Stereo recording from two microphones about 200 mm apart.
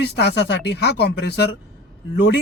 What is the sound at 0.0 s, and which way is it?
A man's voice, 55° left (ahead or behind).